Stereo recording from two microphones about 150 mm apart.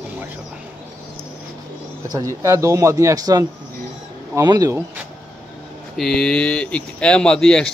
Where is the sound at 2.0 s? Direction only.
25° right (ahead or behind).